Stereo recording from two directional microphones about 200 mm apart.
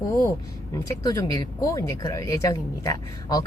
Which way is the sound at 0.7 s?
15° left (ahead or behind).